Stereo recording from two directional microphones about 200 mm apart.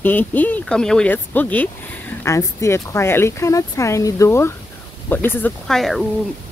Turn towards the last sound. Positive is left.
turn(degrees=0)  # may be behind; listen again after turning